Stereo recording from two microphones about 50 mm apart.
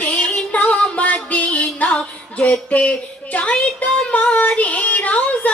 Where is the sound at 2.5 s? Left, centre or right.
Left.